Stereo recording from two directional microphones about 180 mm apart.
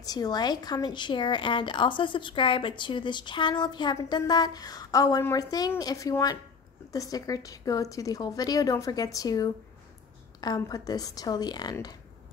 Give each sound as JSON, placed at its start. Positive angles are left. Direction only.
{"t": 0.0, "sound": "a woman's voice", "side_deg": 20}